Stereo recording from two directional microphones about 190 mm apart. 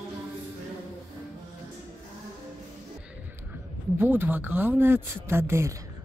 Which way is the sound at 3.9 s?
10° right (ahead or behind).